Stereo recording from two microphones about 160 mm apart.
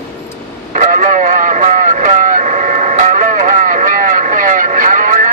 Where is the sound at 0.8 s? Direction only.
50° right (ahead or behind).